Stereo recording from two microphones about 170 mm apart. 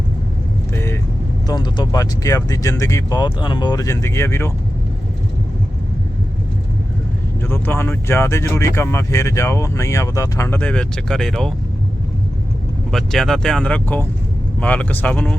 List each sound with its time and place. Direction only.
0.7 s vehicle: 15° left (ahead or behind)
1.5 s speech: 25° left (ahead or behind)
7.4 s speech: 15° left (ahead or behind)
12.9 s speech: centre (ahead or behind)